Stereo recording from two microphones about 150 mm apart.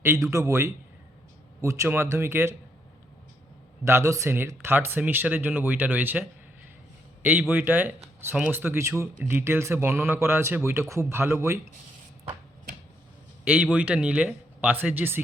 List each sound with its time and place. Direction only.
0.3 s a man's voice: 20° right (ahead or behind)
3.8 s a man's voice: 20° right (ahead or behind)
13.4 s speech: 10° right (ahead or behind)